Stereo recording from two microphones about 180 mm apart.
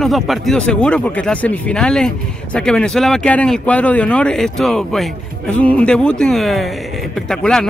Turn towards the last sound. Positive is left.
turn(degrees=5)  # may be behind; listen again after turning